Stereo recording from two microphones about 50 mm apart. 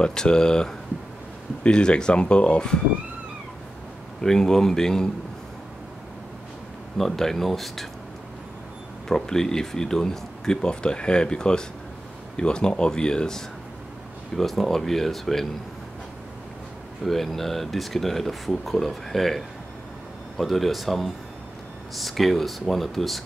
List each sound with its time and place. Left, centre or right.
0.0 s speech: centre
4.2 s speech: centre
7.0 s speech: centre
9.1 s speech: centre
14.3 s speech: centre
17.0 s speech: centre